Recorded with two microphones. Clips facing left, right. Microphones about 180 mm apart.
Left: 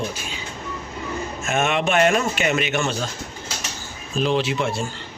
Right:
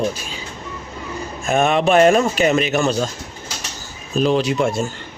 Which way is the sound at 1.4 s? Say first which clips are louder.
Right 6 dB; 35° right (ahead or behind).